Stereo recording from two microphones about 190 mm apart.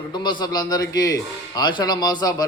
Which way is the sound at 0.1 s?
25° left (ahead or behind).